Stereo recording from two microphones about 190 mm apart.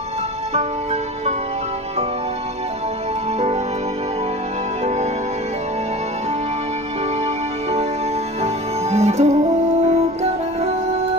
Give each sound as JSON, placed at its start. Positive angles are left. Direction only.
{"t": 8.9, "sound": "music", "side_deg": -35}